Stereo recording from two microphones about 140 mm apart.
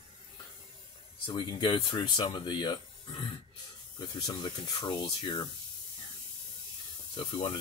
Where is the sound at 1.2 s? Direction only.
35° left (ahead or behind).